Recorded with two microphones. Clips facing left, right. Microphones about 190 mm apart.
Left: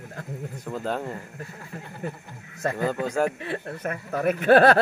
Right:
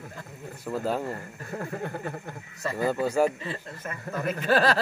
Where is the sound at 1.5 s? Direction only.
55° right (ahead or behind).